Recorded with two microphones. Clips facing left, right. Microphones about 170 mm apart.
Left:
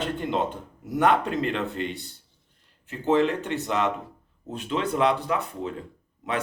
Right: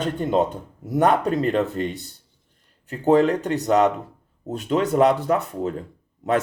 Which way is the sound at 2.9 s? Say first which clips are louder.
Right 5 dB; 40° right (ahead or behind).